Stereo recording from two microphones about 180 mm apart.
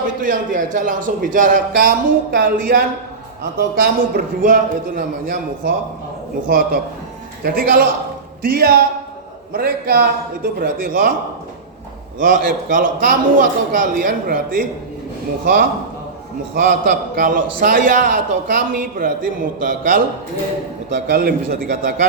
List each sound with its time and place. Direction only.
0.2 s a man's voice: 50° right (ahead or behind)
7.4 s a man's voice: 55° right (ahead or behind)
12.2 s a man's voice: 50° right (ahead or behind)